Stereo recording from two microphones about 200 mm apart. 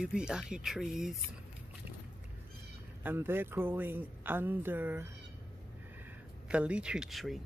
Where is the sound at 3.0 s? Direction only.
10° right (ahead or behind).